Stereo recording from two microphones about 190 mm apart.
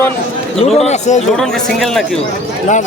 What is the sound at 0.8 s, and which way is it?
Speech, 35° left (ahead or behind).